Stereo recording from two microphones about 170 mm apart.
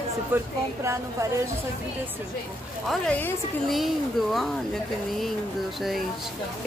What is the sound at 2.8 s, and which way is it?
Speech, centre (ahead or behind).